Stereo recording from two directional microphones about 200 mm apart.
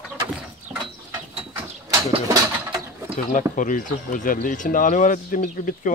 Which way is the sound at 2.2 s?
15° right (ahead or behind).